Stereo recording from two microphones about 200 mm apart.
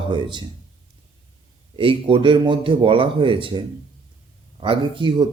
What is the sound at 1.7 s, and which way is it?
A man's voice, 25° right (ahead or behind).